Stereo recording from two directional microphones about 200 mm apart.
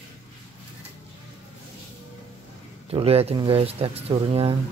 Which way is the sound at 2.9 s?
30° right (ahead or behind).